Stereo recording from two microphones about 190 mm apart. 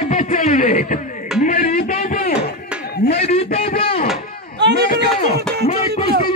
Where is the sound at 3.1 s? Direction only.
35° left (ahead or behind).